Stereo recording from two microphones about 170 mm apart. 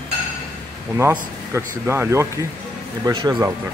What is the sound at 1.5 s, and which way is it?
Speech, 15° right (ahead or behind).